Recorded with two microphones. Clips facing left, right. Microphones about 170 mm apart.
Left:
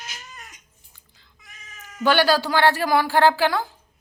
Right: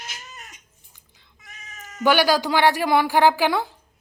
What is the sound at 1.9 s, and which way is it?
A woman's voice, 15° right (ahead or behind).